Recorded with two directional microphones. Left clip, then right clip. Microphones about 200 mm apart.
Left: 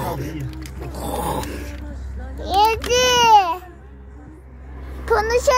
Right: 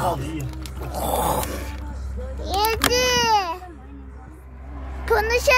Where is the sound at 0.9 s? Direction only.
35° right (ahead or behind).